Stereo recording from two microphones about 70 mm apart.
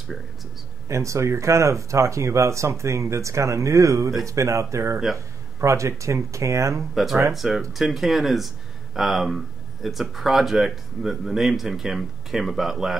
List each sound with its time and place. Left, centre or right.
0.8 s speech: right
7.3 s speech: centre